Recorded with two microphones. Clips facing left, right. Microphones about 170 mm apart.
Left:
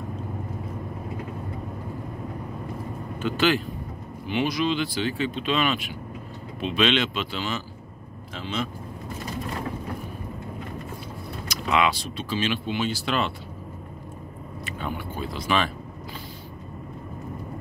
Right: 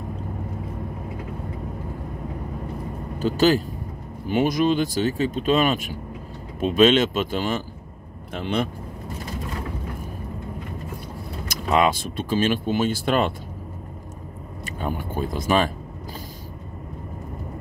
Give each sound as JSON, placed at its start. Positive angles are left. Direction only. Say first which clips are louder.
{"t": 3.2, "sound": "speech", "louder": "right 4 dB", "side_deg": -40}
{"t": 11.4, "sound": "speech", "louder": "right 3 dB", "side_deg": -45}
{"t": 14.8, "sound": "speech", "louder": "right 5 dB", "side_deg": -45}